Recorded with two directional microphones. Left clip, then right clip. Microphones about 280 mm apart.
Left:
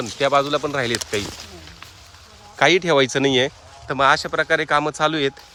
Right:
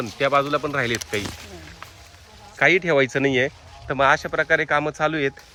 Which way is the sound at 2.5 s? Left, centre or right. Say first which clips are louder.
Left 2 dB; centre.